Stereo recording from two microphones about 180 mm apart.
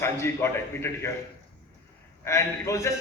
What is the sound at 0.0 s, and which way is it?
A man's voice, 15° left (ahead or behind).